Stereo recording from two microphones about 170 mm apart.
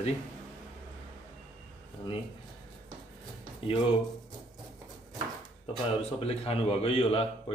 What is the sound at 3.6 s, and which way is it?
Speech, 35° left (ahead or behind).